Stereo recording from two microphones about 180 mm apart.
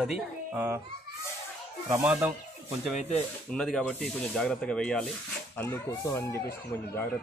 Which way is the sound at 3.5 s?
5° left (ahead or behind).